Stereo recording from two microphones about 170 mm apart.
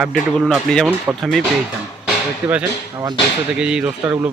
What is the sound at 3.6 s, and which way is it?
Speech, 5° right (ahead or behind).